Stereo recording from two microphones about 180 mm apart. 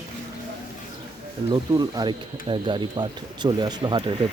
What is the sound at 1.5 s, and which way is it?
Speech, 20° right (ahead or behind).